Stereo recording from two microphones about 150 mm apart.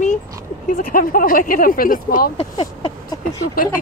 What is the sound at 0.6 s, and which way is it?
Speech, 70° left (ahead or behind).